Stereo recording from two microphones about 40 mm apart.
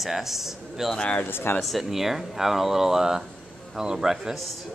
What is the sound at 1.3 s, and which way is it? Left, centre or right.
Speech, left.